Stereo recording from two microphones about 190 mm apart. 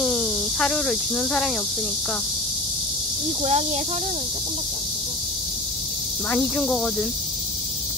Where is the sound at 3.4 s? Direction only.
35° right (ahead or behind).